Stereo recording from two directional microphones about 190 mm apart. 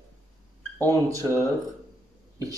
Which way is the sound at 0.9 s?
15° right (ahead or behind).